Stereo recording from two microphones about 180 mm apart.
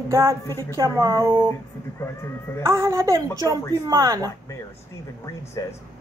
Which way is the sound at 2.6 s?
15° right (ahead or behind).